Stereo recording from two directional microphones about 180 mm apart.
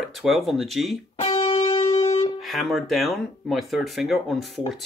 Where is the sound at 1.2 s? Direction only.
30° left (ahead or behind).